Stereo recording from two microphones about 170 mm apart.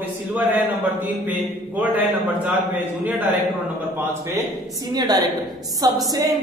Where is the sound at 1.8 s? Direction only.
10° right (ahead or behind).